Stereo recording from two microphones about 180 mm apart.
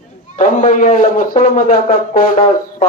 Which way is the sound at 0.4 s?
45° left (ahead or behind).